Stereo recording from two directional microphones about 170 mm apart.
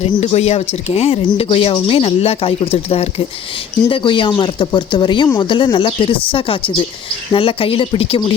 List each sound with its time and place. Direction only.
0.0 s speech: 35° left (ahead or behind)